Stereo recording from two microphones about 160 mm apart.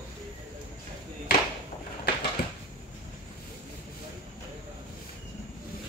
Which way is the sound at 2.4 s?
80° left.